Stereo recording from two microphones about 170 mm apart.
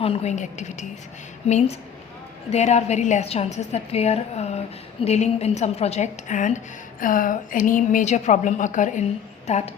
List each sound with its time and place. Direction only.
0.0 s a woman's voice: 35° left (ahead or behind)